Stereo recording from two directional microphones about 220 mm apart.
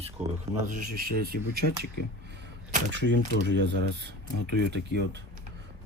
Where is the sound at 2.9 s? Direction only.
55° right (ahead or behind).